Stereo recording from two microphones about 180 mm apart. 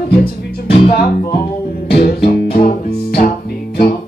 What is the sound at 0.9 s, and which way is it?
Music, 55° left (ahead or behind).